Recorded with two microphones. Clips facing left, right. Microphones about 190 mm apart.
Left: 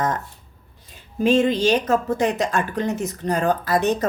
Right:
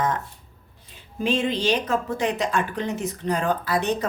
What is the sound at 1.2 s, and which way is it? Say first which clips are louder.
A woman's voice: left 5 dB; 45° left (ahead or behind).